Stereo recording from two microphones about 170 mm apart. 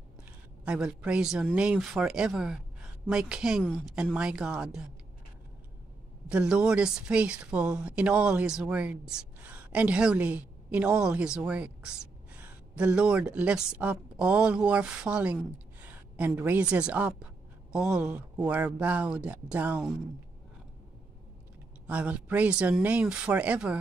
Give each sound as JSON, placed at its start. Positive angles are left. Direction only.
{"t": 0.7, "sound": "speech", "side_deg": -5}
{"t": 6.2, "sound": "speech", "side_deg": -5}
{"t": 21.8, "sound": "speech", "side_deg": -10}